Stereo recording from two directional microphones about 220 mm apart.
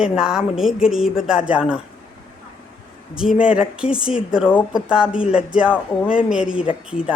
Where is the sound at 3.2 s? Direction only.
5° right (ahead or behind).